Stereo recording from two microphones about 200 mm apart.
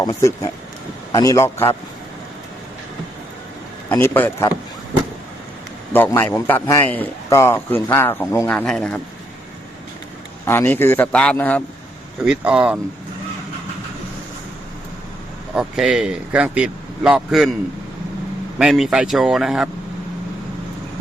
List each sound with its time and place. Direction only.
0.0 s a man's voice: 15° left (ahead or behind)
3.8 s a man's voice: 10° left (ahead or behind)
5.9 s a man's voice: 10° left (ahead or behind)
10.4 s a man's voice: 10° left (ahead or behind)
12.2 s speech: 5° right (ahead or behind)
15.5 s speech: 5° right (ahead or behind)
18.6 s speech: centre (ahead or behind)